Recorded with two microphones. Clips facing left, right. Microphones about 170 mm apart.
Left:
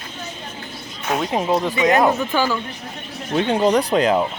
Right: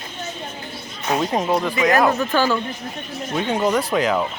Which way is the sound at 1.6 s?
20° left (ahead or behind).